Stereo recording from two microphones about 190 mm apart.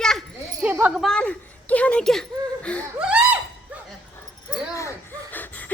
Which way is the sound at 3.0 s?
5° right (ahead or behind).